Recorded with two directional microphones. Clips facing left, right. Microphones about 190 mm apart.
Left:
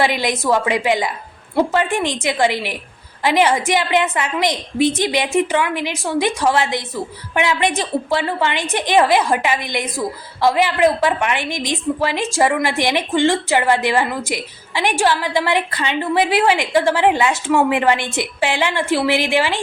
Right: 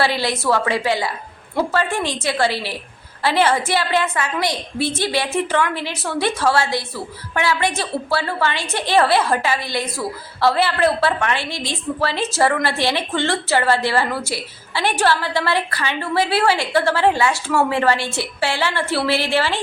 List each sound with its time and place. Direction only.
0.0 s a woman's voice: 15° left (ahead or behind)